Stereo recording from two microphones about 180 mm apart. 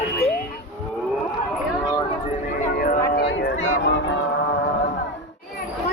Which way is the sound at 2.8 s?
55° left (ahead or behind).